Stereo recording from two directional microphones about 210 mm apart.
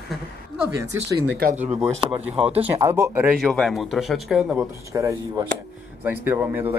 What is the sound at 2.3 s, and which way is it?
Speech, 30° right (ahead or behind).